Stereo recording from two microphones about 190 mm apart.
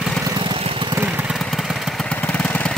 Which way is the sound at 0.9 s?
10° right (ahead or behind).